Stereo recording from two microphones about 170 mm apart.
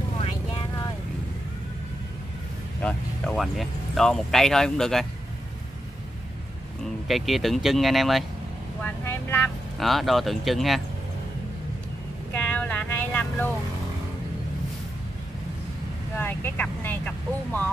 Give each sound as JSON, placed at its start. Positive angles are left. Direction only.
{"t": 0.2, "sound": "vehicle", "side_deg": 25}
{"t": 2.8, "sound": "speech", "side_deg": 5}
{"t": 7.1, "sound": "speech", "side_deg": 0}
{"t": 8.8, "sound": "vehicle", "side_deg": 15}
{"t": 9.8, "sound": "speech", "side_deg": 0}
{"t": 12.4, "sound": "vehicle", "side_deg": 10}
{"t": 16.2, "sound": "vehicle", "side_deg": 15}